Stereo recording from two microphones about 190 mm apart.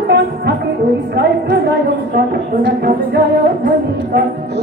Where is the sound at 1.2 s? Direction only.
55° right (ahead or behind).